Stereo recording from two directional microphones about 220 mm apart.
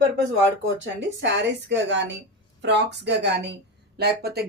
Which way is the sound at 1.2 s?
50° right (ahead or behind).